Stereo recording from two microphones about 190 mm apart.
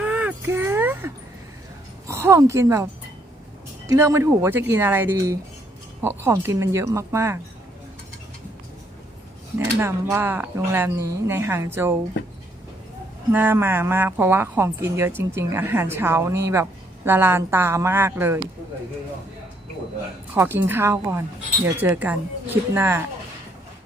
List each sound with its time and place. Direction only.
0.0 s a sound: 10° right (ahead or behind)
2.0 s speech: 15° right (ahead or behind)
9.8 s speech: 10° right (ahead or behind)
13.3 s speech: 10° right (ahead or behind)
20.3 s speech: 10° right (ahead or behind)